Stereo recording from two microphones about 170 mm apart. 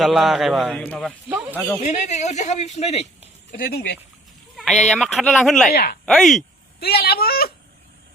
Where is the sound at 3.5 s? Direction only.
60° left (ahead or behind).